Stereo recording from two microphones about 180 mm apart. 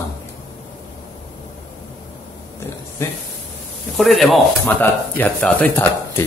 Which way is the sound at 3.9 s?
Centre (ahead or behind).